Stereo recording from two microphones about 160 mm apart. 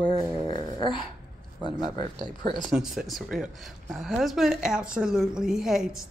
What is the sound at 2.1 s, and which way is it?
Speech, 25° right (ahead or behind).